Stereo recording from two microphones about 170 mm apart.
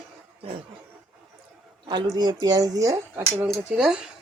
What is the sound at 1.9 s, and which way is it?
Speech, 25° right (ahead or behind).